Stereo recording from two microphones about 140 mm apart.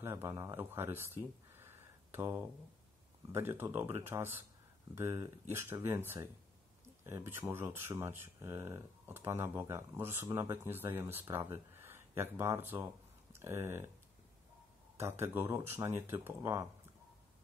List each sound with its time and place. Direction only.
0.0 s speech: 20° right (ahead or behind)
15.0 s speech: 20° right (ahead or behind)